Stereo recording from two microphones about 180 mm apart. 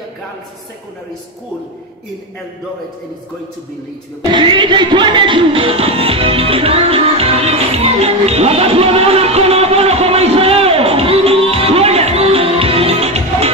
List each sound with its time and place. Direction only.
4.3 s music: 25° right (ahead or behind)